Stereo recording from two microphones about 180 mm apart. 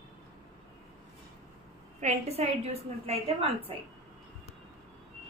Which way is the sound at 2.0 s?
40° right (ahead or behind).